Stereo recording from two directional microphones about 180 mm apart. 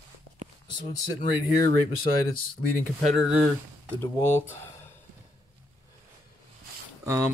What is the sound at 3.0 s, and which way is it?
Speech, 5° right (ahead or behind).